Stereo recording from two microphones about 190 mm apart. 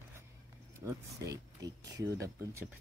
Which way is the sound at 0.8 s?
15° right (ahead or behind).